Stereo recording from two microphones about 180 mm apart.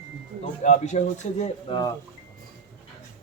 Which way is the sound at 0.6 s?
40° left (ahead or behind).